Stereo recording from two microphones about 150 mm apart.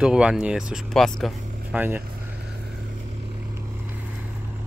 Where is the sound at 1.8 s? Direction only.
10° right (ahead or behind).